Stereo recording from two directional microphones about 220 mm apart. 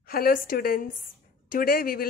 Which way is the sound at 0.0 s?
40° left (ahead or behind).